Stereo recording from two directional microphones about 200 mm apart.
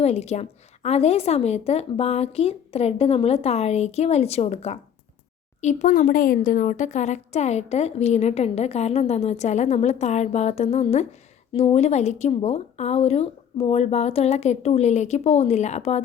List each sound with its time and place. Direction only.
0.0 s speech: 30° left (ahead or behind)